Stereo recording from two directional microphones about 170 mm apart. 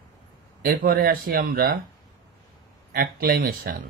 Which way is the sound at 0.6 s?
60° right (ahead or behind).